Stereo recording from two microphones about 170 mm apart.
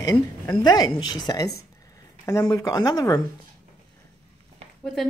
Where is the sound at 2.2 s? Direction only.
20° left (ahead or behind).